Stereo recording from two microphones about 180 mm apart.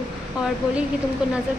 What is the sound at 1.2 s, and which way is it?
Speech, 5° right (ahead or behind).